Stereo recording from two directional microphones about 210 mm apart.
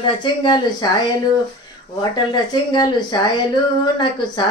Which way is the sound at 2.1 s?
20° left (ahead or behind).